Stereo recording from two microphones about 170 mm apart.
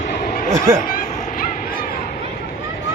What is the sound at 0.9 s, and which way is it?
Vehicle, 55° left (ahead or behind).